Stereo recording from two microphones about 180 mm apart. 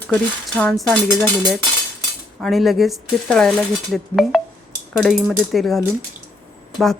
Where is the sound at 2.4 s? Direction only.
Centre (ahead or behind).